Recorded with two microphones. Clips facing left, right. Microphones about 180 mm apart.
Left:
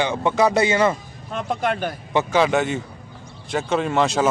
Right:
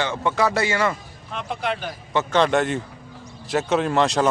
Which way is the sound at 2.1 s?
5° left (ahead or behind).